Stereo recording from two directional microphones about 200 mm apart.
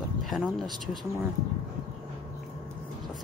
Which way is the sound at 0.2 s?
Centre (ahead or behind).